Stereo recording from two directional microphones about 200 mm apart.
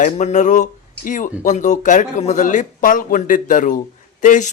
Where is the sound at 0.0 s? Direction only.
35° left (ahead or behind).